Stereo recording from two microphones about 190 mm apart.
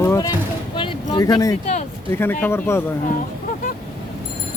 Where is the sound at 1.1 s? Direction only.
20° left (ahead or behind).